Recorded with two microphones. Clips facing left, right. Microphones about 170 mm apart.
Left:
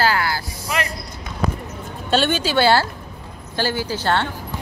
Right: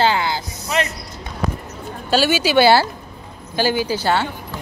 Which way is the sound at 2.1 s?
5° right (ahead or behind).